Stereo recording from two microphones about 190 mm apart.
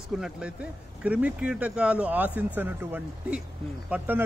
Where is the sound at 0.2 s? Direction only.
5° right (ahead or behind).